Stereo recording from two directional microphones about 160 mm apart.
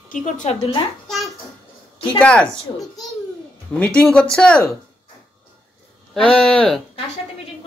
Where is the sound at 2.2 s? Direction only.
5° left (ahead or behind).